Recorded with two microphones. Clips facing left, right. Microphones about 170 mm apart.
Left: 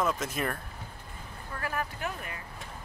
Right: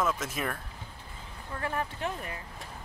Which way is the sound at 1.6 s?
25° right (ahead or behind).